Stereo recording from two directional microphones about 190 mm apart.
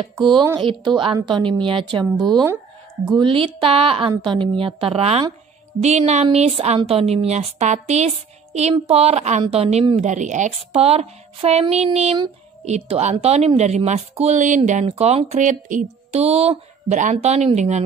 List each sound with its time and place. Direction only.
0.0 s a woman's voice: 25° right (ahead or behind)
3.2 s a woman's voice: 25° right (ahead or behind)